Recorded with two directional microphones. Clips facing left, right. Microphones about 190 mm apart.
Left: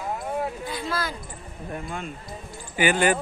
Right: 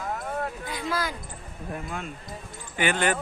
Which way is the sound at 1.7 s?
Centre (ahead or behind).